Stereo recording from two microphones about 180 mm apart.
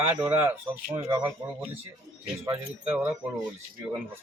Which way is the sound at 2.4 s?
10° right (ahead or behind).